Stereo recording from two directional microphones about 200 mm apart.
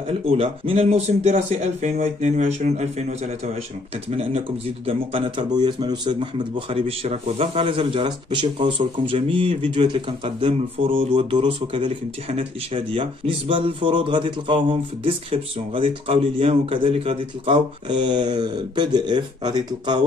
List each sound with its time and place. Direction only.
0.2 s speech: 30° right (ahead or behind)
4.8 s speech: 25° right (ahead or behind)